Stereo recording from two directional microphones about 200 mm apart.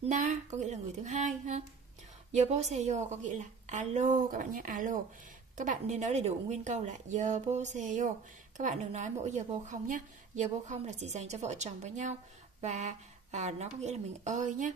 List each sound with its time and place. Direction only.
0.0 s a woman's voice: 35° right (ahead or behind)